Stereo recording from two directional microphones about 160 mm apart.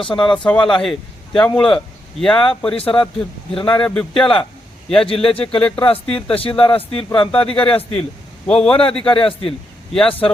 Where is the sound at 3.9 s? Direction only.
5° left (ahead or behind).